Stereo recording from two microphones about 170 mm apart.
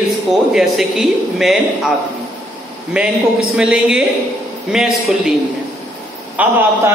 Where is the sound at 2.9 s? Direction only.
5° right (ahead or behind).